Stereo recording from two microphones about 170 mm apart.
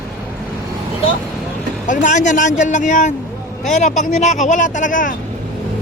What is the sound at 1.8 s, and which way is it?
Speech, 50° left (ahead or behind).